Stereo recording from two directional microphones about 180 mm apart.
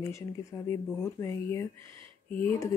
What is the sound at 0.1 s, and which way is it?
Speech, 15° left (ahead or behind).